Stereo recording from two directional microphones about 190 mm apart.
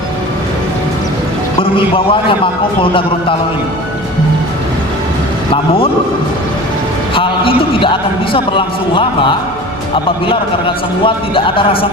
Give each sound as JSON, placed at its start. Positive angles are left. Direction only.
{"t": 1.7, "sound": "a man's voice", "side_deg": 30}
{"t": 7.1, "sound": "a man's voice", "side_deg": 30}
{"t": 11.0, "sound": "a man's voice", "side_deg": 25}